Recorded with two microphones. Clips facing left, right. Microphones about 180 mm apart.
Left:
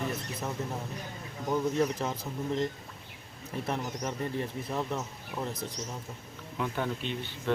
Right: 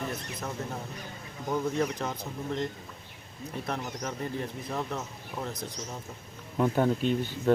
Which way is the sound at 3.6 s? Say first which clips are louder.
Left 1 dB; centre (ahead or behind).